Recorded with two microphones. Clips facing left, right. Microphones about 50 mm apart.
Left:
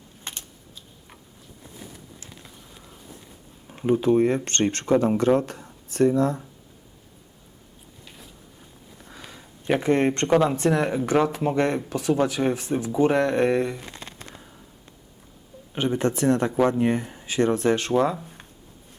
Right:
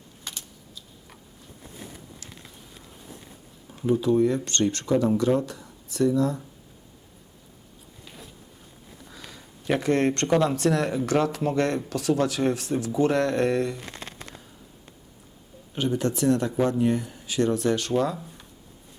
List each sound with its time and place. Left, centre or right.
0.3 s typing: left
3.8 s speech: left
9.0 s a sound: left
9.4 s speech: centre
15.7 s speech: left